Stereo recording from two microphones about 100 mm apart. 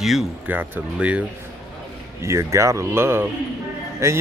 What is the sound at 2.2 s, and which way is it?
A man's voice, 30° right (ahead or behind).